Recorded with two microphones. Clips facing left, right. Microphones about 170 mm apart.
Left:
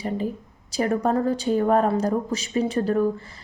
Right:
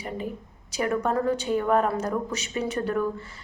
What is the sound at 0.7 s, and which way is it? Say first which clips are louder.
A woman's voice: left 3 dB; 30° left (ahead or behind).